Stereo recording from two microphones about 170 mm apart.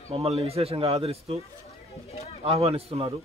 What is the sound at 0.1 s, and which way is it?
Speech, 35° right (ahead or behind).